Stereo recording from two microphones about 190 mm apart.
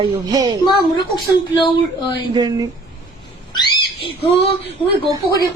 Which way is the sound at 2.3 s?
20° right (ahead or behind).